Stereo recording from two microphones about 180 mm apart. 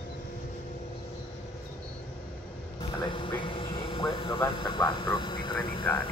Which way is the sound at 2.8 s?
30° left (ahead or behind).